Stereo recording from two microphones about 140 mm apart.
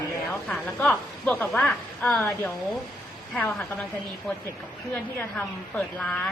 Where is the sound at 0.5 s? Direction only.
5° left (ahead or behind).